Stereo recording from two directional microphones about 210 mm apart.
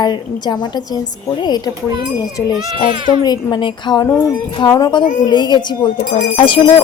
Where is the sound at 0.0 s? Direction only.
20° left (ahead or behind).